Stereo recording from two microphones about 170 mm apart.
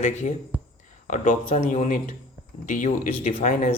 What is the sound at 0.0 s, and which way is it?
A man's voice, 45° left (ahead or behind).